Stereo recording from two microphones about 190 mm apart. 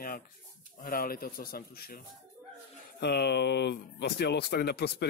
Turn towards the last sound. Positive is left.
turn(degrees=60)  # may be behind; listen again after turning